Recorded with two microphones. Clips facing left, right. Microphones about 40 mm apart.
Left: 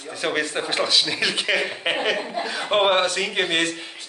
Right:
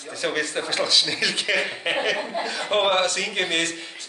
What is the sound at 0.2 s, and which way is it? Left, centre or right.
Speech, centre.